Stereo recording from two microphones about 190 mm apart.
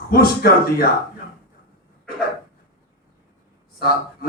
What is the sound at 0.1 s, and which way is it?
Speech, 55° left (ahead or behind).